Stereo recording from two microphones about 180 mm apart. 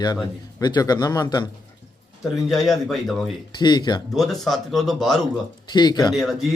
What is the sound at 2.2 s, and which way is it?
Speech, centre (ahead or behind).